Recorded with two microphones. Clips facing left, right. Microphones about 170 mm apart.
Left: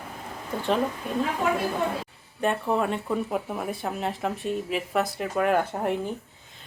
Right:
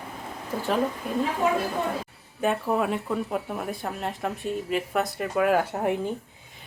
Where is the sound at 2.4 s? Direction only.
5° right (ahead or behind).